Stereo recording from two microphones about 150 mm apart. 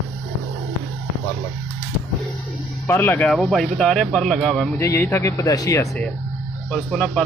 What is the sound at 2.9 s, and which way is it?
Speech, 15° left (ahead or behind).